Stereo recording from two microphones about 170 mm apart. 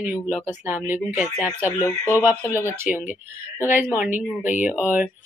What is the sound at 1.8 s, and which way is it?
Speech, 15° left (ahead or behind).